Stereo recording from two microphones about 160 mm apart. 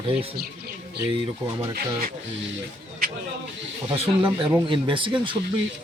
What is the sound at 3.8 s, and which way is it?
Speech, 35° right (ahead or behind).